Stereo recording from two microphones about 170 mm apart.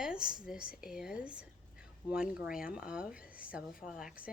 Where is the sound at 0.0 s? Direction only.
5° right (ahead or behind).